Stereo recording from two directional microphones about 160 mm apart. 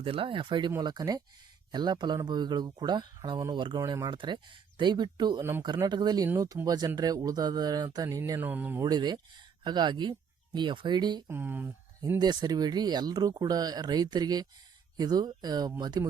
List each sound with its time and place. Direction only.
0.0 s speech: 35° right (ahead or behind)
5.4 s speech: 15° right (ahead or behind)
5.6 s speech: 25° right (ahead or behind)
8.8 s speech: 25° right (ahead or behind)
11.3 s speech: 15° right (ahead or behind)
12.2 s speech: 25° right (ahead or behind)